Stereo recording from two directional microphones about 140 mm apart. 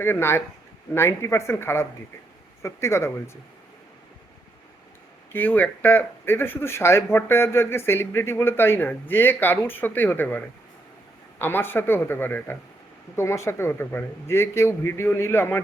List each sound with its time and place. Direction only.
0.0 s speech: 15° left (ahead or behind)
5.3 s speech: 10° left (ahead or behind)